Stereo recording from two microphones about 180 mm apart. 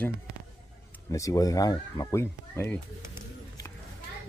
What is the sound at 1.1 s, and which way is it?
Speech, 20° left (ahead or behind).